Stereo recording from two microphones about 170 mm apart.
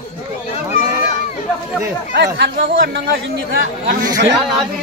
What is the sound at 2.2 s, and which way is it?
Speech, 75° right (ahead or behind).